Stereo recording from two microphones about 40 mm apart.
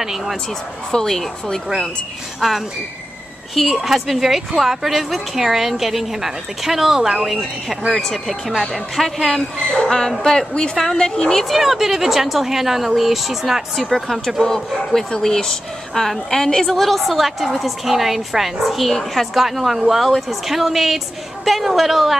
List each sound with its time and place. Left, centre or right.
0.0 s a woman's voice: centre
0.9 s speech: centre
2.4 s a woman's voice: centre
7.9 s speech: centre
11.4 s a woman's voice: centre
13.7 s a woman's voice: centre
16.7 s a woman's voice: centre